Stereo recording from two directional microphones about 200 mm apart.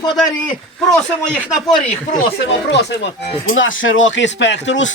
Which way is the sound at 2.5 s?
60° left (ahead or behind).